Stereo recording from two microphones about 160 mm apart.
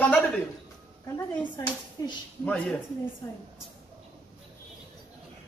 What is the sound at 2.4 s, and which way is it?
Speech, 10° left (ahead or behind).